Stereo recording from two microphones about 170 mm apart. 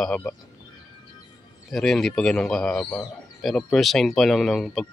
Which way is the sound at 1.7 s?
Centre (ahead or behind).